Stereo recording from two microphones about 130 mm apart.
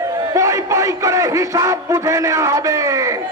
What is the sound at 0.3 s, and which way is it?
A man's voice, 25° right (ahead or behind).